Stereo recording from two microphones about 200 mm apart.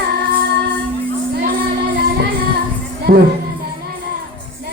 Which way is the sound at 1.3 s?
45° right (ahead or behind).